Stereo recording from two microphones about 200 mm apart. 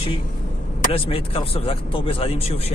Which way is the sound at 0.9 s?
30° left (ahead or behind).